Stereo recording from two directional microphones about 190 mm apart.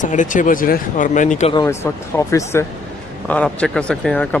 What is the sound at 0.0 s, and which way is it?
Speech, 40° left (ahead or behind).